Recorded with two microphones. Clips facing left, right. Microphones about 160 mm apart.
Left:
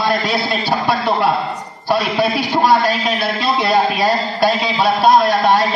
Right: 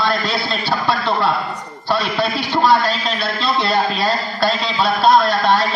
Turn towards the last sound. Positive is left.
turn(degrees=15)  # may be behind; listen again after turning